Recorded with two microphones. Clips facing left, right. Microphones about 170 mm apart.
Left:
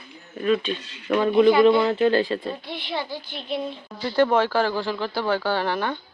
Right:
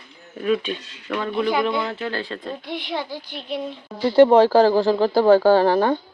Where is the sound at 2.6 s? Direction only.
15° right (ahead or behind).